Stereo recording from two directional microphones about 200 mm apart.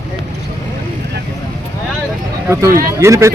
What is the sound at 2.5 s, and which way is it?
Speech, 15° right (ahead or behind).